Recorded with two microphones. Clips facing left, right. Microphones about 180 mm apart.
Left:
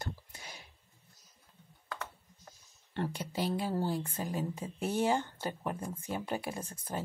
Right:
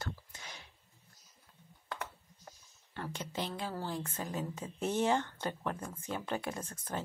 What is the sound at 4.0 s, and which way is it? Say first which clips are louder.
Speech: left 2 dB; 30° left (ahead or behind).